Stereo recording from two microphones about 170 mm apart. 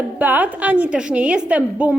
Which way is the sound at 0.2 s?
10° right (ahead or behind).